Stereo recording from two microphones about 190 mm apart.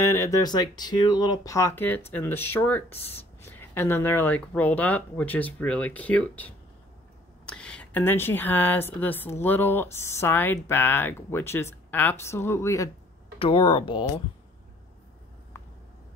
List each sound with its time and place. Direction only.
0.0 s speech: 15° left (ahead or behind)
13.4 s speech: 30° left (ahead or behind)
15.5 s a sound: 15° left (ahead or behind)